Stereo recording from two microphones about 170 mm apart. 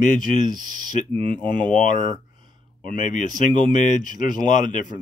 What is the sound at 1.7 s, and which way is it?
Speech, 50° left (ahead or behind).